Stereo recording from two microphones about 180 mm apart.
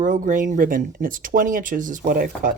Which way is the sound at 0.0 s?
45° right (ahead or behind).